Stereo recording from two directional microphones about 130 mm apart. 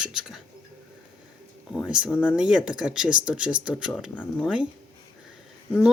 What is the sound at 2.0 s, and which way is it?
Speech, 5° right (ahead or behind).